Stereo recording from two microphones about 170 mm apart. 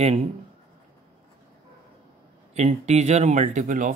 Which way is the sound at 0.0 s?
35° right (ahead or behind).